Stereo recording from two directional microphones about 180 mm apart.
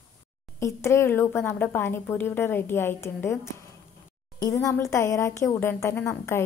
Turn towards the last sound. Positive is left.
turn(degrees=15)  # may be behind; listen again after turning